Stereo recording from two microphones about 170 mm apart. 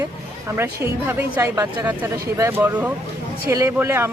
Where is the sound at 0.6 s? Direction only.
15° right (ahead or behind).